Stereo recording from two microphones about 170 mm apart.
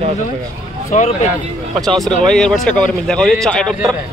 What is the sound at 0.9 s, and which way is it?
Speech, 45° left (ahead or behind).